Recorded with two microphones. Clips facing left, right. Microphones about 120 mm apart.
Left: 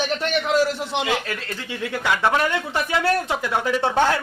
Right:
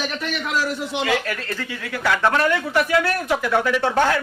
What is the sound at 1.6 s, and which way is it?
A man's voice, 20° left (ahead or behind).